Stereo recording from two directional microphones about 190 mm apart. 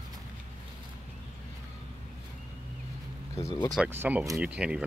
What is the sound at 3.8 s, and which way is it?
Speech, 10° right (ahead or behind).